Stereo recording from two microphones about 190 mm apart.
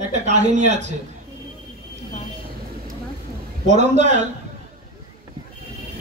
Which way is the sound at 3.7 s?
35° right (ahead or behind).